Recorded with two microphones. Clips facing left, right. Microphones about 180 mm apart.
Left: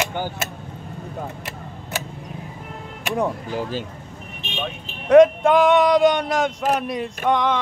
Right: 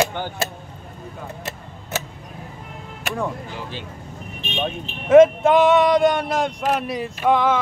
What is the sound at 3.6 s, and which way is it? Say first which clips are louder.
Speech: left 7 dB; 40° left (ahead or behind).